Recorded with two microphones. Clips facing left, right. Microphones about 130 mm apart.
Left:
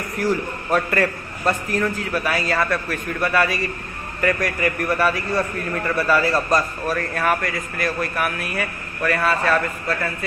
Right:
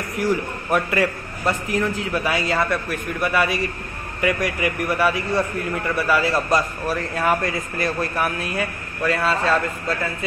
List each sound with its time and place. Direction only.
0.2 s a man's voice: 15° right (ahead or behind)